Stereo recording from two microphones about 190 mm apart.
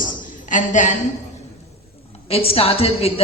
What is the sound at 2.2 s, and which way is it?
Speech, 30° left (ahead or behind).